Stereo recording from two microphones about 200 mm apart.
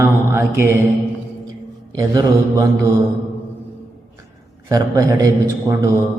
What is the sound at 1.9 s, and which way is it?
Mantra, 15° right (ahead or behind).